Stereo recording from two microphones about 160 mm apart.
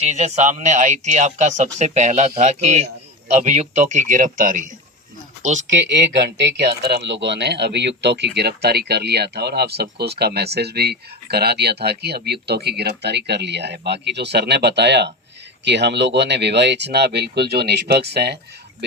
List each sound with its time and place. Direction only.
0.0 s a man's voice: 45° right (ahead or behind)
5.8 s speech: 90° right